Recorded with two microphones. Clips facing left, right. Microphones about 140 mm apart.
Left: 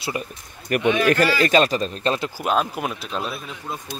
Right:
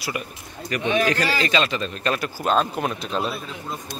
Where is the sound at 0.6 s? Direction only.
55° left (ahead or behind).